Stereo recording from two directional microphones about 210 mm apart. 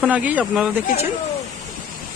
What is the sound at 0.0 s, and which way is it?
Speech, 5° right (ahead or behind).